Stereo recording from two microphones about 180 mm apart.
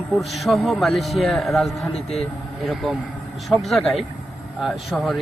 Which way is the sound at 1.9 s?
35° left (ahead or behind).